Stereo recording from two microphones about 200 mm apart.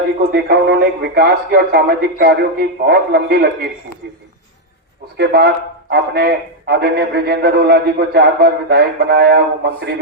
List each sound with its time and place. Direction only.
0.3 s a man's voice: 55° right (ahead or behind)
5.1 s a man's voice: 55° right (ahead or behind)